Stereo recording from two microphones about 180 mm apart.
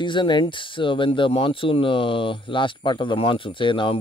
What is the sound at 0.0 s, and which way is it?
Speech, 25° left (ahead or behind).